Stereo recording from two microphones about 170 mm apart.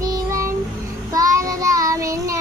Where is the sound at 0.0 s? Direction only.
20° right (ahead or behind).